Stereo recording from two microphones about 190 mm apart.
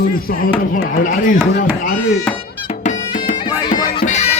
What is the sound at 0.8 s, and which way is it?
Speech, 45° left (ahead or behind).